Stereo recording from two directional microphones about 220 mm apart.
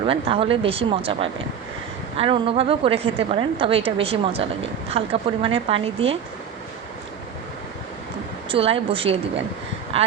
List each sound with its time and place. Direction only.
0.0 s a woman's voice: 25° right (ahead or behind)
8.4 s a woman's voice: 25° right (ahead or behind)